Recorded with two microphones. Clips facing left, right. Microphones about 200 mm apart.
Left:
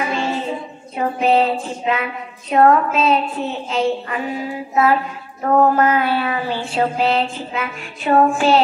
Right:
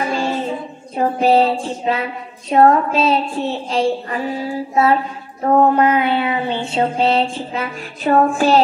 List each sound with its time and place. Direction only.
0.9 s a woman's voice: 35° right (ahead or behind)
5.4 s child singing: 20° right (ahead or behind); by 8.5 s 40° right (ahead or behind)